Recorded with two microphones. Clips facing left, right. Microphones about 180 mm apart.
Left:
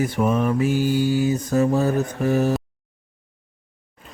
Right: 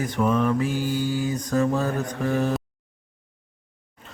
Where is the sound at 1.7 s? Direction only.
10° left (ahead or behind).